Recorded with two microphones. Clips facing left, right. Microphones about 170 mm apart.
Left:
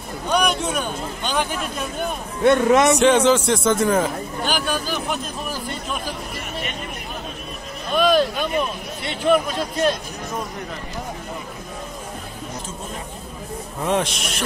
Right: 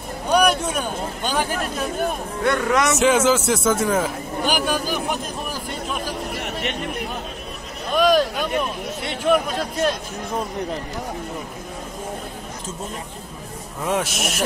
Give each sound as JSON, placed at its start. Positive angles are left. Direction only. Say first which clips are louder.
{"t": 0.3, "sound": "a man's voice", "louder": "right 3 dB", "side_deg": -10}
{"t": 2.4, "sound": "speech", "louder": "left 5 dB", "side_deg": 25}
{"t": 3.0, "sound": "speech", "louder": "left 2 dB", "side_deg": -5}
{"t": 6.3, "sound": "chatter", "louder": "right 3 dB", "side_deg": -75}
{"t": 7.9, "sound": "a sound", "louder": "even", "side_deg": -10}
{"t": 9.0, "sound": "speech", "louder": "left 1 dB", "side_deg": -5}
{"t": 13.8, "sound": "speech", "louder": "left 1 dB", "side_deg": -5}